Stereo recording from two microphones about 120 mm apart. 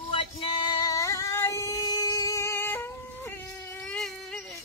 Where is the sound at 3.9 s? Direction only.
5° left (ahead or behind).